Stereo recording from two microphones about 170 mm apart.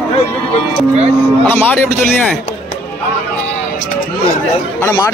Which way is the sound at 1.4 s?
10° left (ahead or behind).